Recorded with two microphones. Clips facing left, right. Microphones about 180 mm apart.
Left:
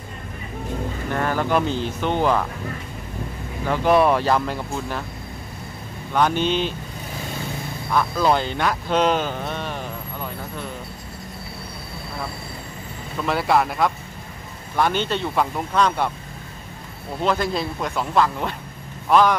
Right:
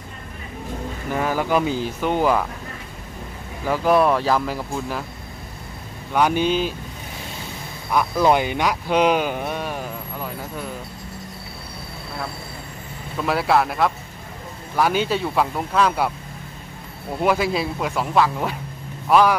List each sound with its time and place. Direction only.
1.1 s speech: 10° right (ahead or behind)
3.6 s speech: 5° right (ahead or behind)
6.1 s speech: 10° right (ahead or behind)
7.9 s speech: 15° right (ahead or behind)
13.2 s speech: centre (ahead or behind)
17.2 s speech: 5° right (ahead or behind)